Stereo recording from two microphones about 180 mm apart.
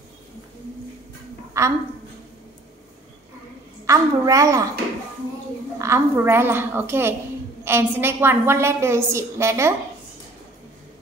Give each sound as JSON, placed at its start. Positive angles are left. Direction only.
{"t": 1.6, "sound": "a woman's voice", "side_deg": -15}
{"t": 3.8, "sound": "a woman's voice", "side_deg": -20}
{"t": 5.8, "sound": "a woman's voice", "side_deg": -15}